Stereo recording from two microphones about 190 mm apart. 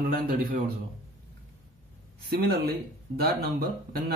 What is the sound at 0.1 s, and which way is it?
Speech, 50° right (ahead or behind).